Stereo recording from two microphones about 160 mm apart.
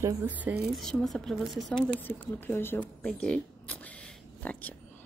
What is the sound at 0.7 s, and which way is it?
A woman's voice, centre (ahead or behind).